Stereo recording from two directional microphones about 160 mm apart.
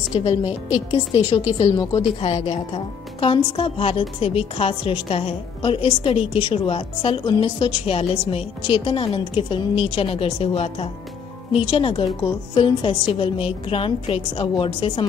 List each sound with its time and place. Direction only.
0.1 s a woman's voice: 45° left (ahead or behind)
0.5 s a woman's voice: 10° right (ahead or behind)
0.9 s a woman's voice: 40° left (ahead or behind)
1.8 s a woman's voice: 25° left (ahead or behind)
2.1 s a woman's voice: 40° left (ahead or behind)